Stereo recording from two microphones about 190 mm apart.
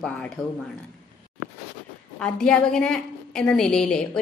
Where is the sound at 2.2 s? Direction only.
5° left (ahead or behind).